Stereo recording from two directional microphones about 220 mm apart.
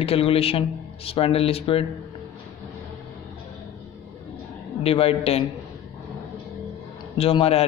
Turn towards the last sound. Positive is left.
turn(degrees=25)  # may be behind; listen again after turning